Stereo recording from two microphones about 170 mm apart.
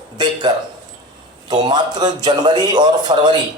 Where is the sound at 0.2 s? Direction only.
25° right (ahead or behind).